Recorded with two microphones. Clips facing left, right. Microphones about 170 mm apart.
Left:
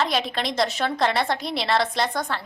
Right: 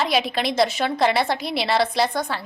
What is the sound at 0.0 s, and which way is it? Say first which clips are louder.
A woman's voice: right 3 dB; 5° right (ahead or behind).